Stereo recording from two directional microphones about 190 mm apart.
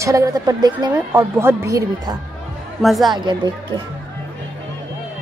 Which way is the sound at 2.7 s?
Centre (ahead or behind).